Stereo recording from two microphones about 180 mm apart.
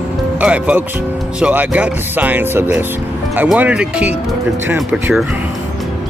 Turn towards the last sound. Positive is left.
turn(degrees=-10)  # may be behind; listen again after turning